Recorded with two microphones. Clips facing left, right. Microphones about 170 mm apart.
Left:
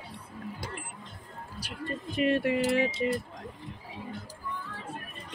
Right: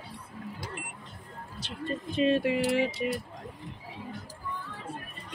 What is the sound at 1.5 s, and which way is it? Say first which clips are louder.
Speech: right 2 dB; 25° right (ahead or behind).